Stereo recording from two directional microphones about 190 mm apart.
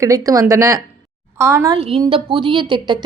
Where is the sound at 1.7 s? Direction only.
30° right (ahead or behind).